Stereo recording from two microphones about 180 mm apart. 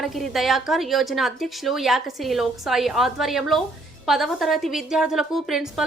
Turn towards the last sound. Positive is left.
turn(degrees=0)  # may be behind; listen again after turning